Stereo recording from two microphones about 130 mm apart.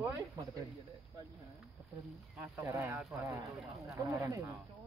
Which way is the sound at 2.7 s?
20° right (ahead or behind).